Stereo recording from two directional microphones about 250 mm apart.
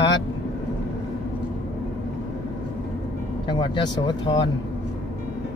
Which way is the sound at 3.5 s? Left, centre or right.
Centre.